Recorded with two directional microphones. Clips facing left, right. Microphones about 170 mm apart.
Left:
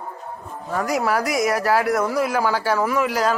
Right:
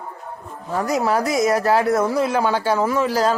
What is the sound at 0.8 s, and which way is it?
Speech, 25° right (ahead or behind).